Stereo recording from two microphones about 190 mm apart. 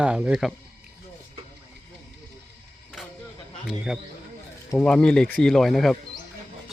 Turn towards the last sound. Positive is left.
turn(degrees=0)  # may be behind; listen again after turning